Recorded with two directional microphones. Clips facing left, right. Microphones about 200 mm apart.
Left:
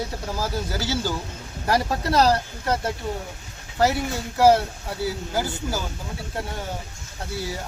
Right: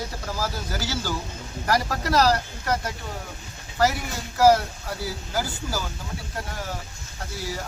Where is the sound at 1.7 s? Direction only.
25° left (ahead or behind).